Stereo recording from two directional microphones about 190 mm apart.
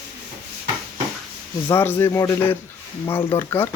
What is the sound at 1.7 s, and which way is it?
Speech, 10° left (ahead or behind).